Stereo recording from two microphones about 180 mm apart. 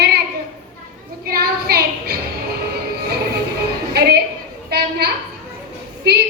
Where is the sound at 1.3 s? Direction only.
55° right (ahead or behind).